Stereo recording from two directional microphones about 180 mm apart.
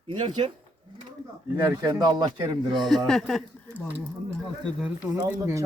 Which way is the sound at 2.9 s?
Centre (ahead or behind).